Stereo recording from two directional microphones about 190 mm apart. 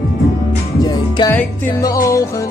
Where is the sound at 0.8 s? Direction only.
20° left (ahead or behind).